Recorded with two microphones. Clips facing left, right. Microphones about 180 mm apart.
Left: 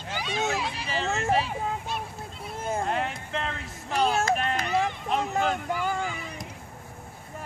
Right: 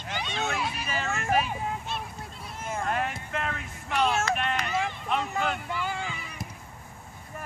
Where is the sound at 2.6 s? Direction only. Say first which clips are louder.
Left 2 dB; 25° left (ahead or behind); by 6.2 s 45° left (ahead or behind).